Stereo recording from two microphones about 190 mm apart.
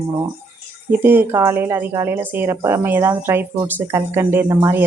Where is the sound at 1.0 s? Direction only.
10° right (ahead or behind).